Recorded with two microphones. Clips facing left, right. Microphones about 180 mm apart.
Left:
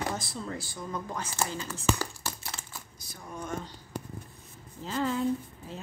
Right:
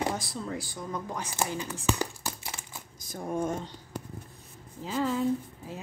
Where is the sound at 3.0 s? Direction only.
50° right (ahead or behind).